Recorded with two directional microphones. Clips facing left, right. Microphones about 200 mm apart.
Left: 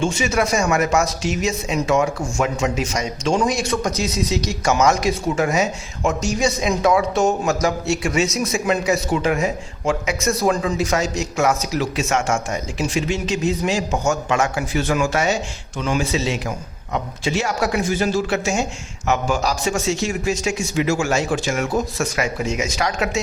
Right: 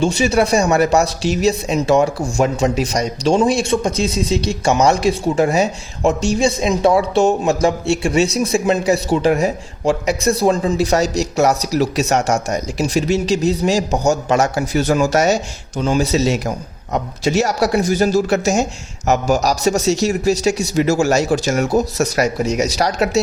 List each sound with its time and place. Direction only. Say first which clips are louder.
0.0 s a man's voice: right 5 dB; 35° right (ahead or behind)